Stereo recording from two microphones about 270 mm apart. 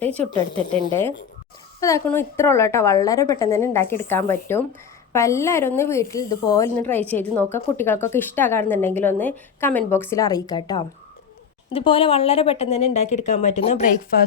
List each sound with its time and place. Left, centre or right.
1.8 s a woman's voice: centre
14.1 s speech: left